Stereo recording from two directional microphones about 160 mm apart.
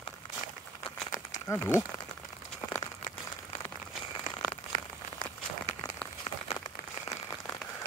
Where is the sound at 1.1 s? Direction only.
20° left (ahead or behind).